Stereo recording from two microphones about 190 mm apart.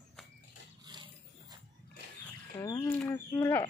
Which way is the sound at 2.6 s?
20° left (ahead or behind).